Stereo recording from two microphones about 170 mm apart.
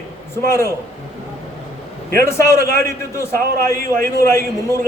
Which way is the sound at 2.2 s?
15° left (ahead or behind).